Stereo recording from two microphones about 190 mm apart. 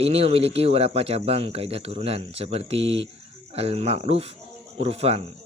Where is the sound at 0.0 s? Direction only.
30° right (ahead or behind).